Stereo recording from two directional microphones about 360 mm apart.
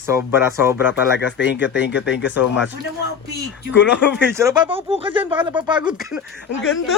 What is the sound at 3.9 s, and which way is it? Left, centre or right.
Mantra, left.